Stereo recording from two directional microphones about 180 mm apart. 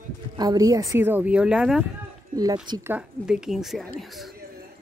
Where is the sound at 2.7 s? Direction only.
20° right (ahead or behind).